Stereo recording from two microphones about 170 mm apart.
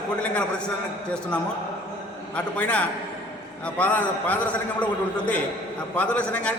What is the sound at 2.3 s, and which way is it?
A man's voice, 10° left (ahead or behind).